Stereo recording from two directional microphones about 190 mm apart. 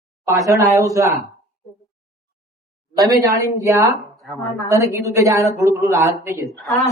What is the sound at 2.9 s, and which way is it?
A woman's voice, 15° right (ahead or behind).